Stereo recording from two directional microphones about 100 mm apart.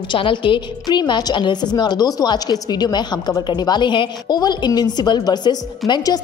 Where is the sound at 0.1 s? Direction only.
55° left (ahead or behind).